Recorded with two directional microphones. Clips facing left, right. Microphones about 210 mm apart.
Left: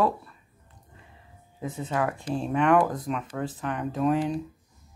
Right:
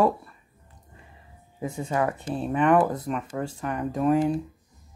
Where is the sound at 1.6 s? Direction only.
10° right (ahead or behind).